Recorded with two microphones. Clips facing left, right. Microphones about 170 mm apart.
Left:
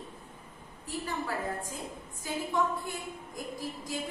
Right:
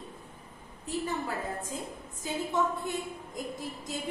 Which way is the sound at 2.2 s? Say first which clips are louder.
Right 1 dB; 20° right (ahead or behind).